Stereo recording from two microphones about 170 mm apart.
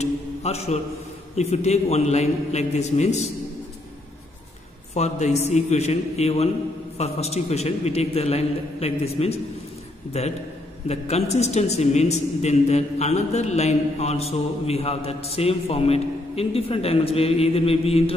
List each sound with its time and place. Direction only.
0.0 s a sound: 40° left (ahead or behind)
1.3 s a man's voice: 40° left (ahead or behind)
4.9 s a man's voice: 40° left (ahead or behind)